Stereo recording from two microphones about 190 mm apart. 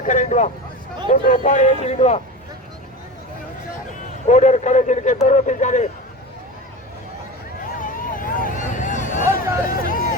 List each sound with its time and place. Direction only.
0.0 s speech: 40° left (ahead or behind)
4.3 s speech: 40° left (ahead or behind)
7.8 s a sound: 45° left (ahead or behind)
9.8 s vehicle: 45° left (ahead or behind)